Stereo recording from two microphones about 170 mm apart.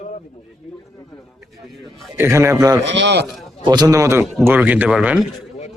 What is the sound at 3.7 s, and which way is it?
A man's voice, 20° right (ahead or behind).